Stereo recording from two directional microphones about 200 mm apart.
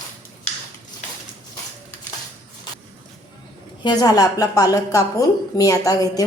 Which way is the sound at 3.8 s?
20° left (ahead or behind).